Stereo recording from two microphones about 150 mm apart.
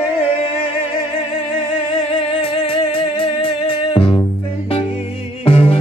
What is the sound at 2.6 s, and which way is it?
Music, 40° left (ahead or behind).